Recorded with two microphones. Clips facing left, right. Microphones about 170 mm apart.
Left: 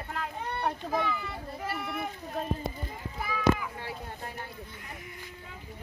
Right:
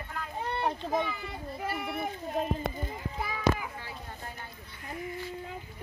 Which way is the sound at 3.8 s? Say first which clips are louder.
Left 3 dB; 65° left (ahead or behind).